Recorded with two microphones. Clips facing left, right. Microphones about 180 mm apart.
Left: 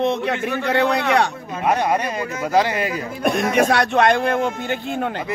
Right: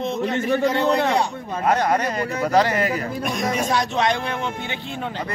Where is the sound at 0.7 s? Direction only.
65° left (ahead or behind).